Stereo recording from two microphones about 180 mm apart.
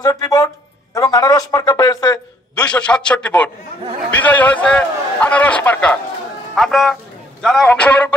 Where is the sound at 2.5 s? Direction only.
5° left (ahead or behind).